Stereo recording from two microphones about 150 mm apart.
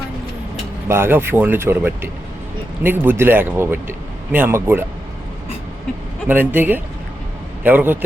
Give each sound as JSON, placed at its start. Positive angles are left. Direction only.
{"t": 0.9, "sound": "speech", "side_deg": -15}
{"t": 6.2, "sound": "speech", "side_deg": -10}